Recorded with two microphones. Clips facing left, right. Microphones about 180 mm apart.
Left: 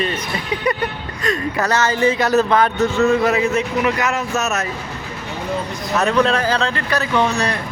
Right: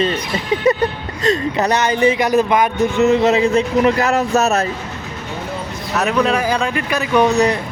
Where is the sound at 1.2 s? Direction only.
25° right (ahead or behind).